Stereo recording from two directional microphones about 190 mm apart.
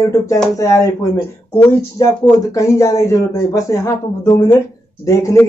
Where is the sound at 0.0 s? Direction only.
15° left (ahead or behind).